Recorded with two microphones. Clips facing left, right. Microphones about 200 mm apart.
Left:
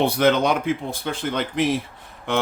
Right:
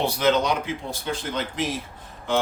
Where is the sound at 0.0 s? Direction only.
55° left (ahead or behind).